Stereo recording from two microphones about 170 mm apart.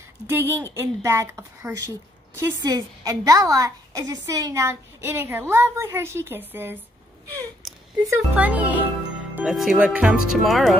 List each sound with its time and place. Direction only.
0.3 s a woman's voice: 15° right (ahead or behind)
7.6 s a sound: centre (ahead or behind)
8.1 s a woman's voice: 10° right (ahead or behind)